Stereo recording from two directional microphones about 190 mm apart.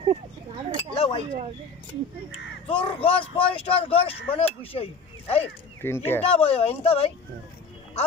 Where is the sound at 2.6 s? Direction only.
30° left (ahead or behind).